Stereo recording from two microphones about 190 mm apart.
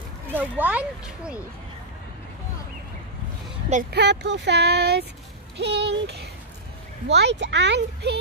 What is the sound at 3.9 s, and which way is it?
A child's voice, 65° right (ahead or behind).